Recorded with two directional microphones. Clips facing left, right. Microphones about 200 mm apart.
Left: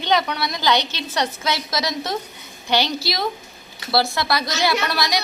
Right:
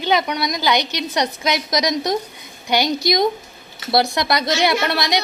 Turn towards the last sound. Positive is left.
turn(degrees=-20)  # may be behind; listen again after turning